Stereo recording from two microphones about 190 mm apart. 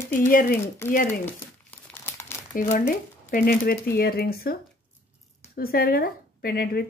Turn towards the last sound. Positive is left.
turn(degrees=55)  # may be behind; listen again after turning